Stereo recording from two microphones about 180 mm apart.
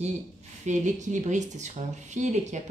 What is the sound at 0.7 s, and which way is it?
Speech, 40° right (ahead or behind).